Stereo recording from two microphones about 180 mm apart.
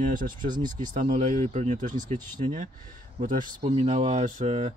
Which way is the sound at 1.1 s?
35° right (ahead or behind).